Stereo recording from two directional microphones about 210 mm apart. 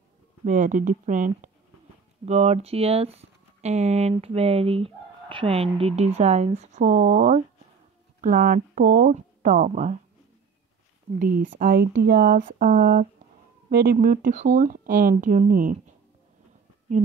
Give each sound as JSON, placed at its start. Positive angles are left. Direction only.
{"t": 0.5, "sound": "speech", "side_deg": -35}
{"t": 11.1, "sound": "speech", "side_deg": -40}